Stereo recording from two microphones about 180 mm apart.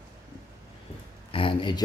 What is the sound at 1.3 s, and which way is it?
Speech, 30° left (ahead or behind).